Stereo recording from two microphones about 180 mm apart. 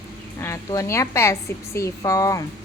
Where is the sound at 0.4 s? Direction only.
15° left (ahead or behind).